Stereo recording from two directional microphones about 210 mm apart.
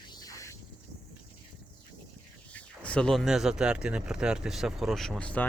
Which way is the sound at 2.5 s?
5° left (ahead or behind).